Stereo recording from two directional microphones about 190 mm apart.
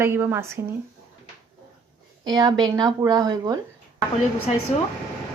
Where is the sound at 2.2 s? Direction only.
20° right (ahead or behind).